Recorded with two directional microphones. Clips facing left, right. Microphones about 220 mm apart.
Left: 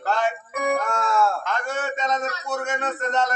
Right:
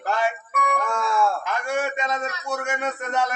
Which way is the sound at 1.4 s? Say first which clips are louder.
Right 2 dB; 10° right (ahead or behind).